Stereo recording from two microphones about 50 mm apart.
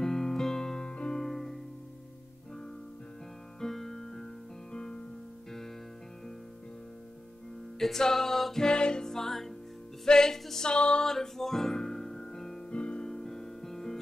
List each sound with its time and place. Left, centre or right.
0.0 s music: centre
1.2 s music: centre
3.6 s music: centre
7.8 s a capella: centre
8.6 s music: centre
11.1 s music: centre
12.7 s music: left
13.1 s music: centre